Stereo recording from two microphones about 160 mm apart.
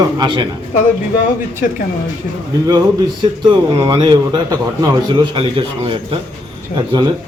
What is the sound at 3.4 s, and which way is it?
A man's voice, 30° right (ahead or behind).